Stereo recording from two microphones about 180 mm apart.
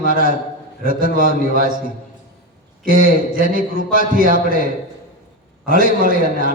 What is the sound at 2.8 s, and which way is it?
A man's voice, 50° right (ahead or behind).